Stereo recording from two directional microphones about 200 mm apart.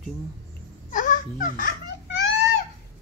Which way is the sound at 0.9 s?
40° left (ahead or behind).